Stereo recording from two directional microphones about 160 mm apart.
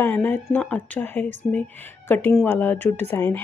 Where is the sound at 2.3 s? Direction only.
10° left (ahead or behind).